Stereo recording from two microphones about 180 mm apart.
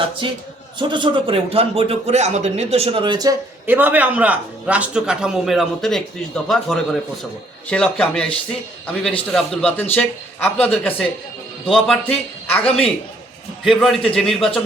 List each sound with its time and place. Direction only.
0.8 s speech: 25° right (ahead or behind)
3.7 s a man's voice: 10° right (ahead or behind); by 12.6 s 5° left (ahead or behind)
13.7 s a man's voice: centre (ahead or behind)